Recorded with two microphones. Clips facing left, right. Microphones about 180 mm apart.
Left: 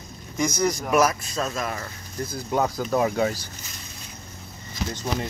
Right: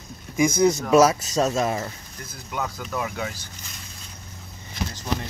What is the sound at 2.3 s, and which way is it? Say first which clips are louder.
Speech: left 6 dB; 35° left (ahead or behind).